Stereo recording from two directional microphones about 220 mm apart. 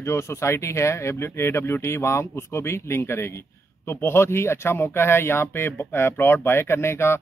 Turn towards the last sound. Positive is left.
turn(degrees=10)  # may be behind; listen again after turning